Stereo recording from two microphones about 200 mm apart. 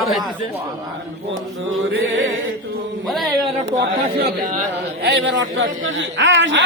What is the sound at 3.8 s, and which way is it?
Speech, 45° right (ahead or behind).